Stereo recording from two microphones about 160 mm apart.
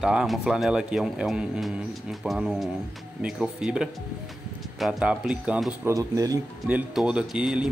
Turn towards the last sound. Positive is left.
turn(degrees=-5)  # may be behind; listen again after turning